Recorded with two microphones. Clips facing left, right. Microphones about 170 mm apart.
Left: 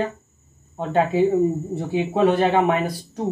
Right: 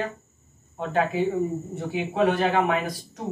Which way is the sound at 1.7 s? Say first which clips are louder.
Left 4 dB; 30° left (ahead or behind).